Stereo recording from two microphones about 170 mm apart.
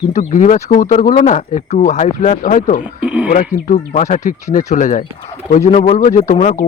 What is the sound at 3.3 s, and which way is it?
Speech, 45° left (ahead or behind).